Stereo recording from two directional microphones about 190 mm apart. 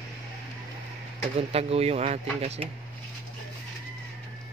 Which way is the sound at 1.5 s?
30° right (ahead or behind).